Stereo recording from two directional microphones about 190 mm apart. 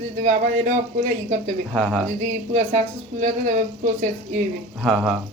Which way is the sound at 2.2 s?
40° right (ahead or behind).